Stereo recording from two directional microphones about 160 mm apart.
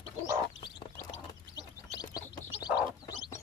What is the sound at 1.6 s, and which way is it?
Bird, 25° left (ahead or behind).